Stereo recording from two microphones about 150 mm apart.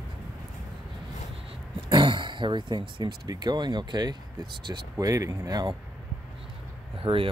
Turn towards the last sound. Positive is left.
turn(degrees=-35)  # may be behind; listen again after turning